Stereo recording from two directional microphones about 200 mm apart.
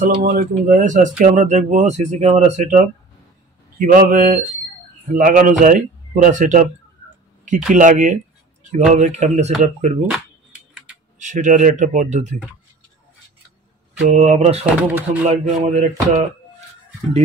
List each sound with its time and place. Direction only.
0.2 s speech: 45° right (ahead or behind)
7.7 s speech: 40° right (ahead or behind)
10.1 s a sound: 5° right (ahead or behind)
11.1 s speech: 40° right (ahead or behind)
14.0 s speech: 35° right (ahead or behind)